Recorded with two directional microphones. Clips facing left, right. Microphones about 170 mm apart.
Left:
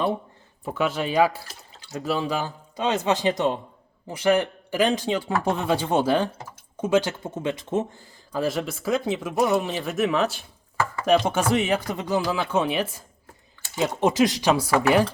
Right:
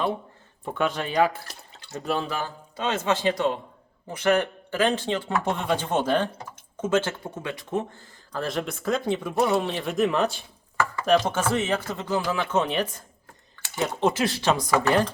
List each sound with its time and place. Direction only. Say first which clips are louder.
0.6 s speech: left 1 dB; 5° left (ahead or behind); by 7.9 s 25° left (ahead or behind)
7.9 s speech: left 4 dB; 10° left (ahead or behind)